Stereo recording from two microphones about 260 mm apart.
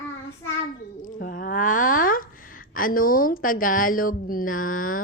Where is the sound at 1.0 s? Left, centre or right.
Left.